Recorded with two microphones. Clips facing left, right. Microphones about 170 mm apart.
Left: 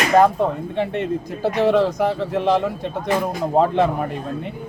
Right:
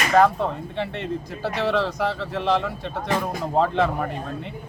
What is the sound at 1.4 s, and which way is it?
Speech, 20° left (ahead or behind).